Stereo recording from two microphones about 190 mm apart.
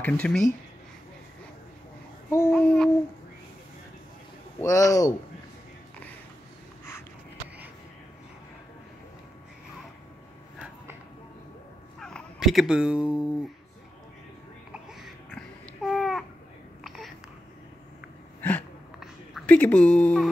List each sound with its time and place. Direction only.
0.0 s speech: 5° left (ahead or behind)
2.2 s babbling: 10° left (ahead or behind)
4.6 s speech: 15° left (ahead or behind)
12.0 s fowl: 5° left (ahead or behind)
14.7 s babbling: centre (ahead or behind)
18.9 s a sound: 5° left (ahead or behind)